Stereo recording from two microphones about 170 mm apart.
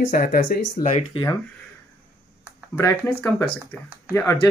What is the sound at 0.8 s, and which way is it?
Speech, 35° left (ahead or behind).